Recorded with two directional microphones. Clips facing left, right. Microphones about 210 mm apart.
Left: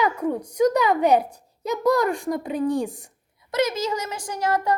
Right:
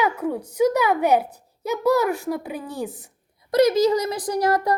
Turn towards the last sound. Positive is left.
turn(degrees=-35)  # may be behind; listen again after turning